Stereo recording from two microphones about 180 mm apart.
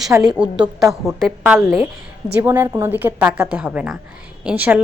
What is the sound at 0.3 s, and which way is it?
A woman's voice, 5° right (ahead or behind).